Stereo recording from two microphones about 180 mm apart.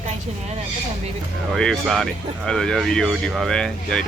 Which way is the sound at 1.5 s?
Centre (ahead or behind).